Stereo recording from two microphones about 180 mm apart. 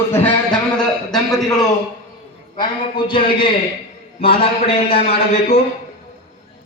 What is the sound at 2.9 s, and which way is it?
Speech, 30° left (ahead or behind).